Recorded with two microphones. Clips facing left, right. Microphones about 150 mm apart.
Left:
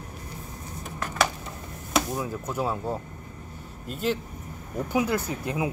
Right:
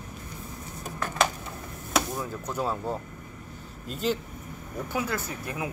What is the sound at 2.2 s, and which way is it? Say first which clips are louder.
Speech: left 2 dB; 5° left (ahead or behind).